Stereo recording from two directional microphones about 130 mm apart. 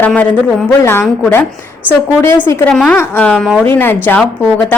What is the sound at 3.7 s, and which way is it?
Speech, 15° left (ahead or behind).